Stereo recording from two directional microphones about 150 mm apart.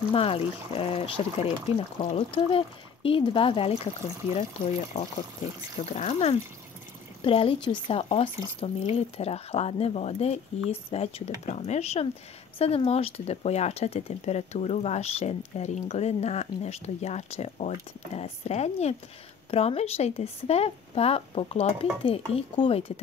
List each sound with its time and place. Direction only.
0.1 s a woman's voice: 40° left (ahead or behind)
4.9 s speech: 55° left (ahead or behind)
5.9 s a woman's voice: 45° left (ahead or behind)